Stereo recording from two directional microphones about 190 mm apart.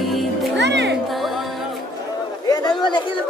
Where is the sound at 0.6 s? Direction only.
65° right (ahead or behind).